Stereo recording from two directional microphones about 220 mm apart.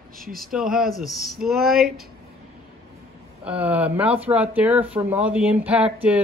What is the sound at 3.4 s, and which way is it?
Speech, 5° right (ahead or behind).